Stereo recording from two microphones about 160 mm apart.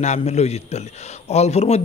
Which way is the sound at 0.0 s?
45° left (ahead or behind).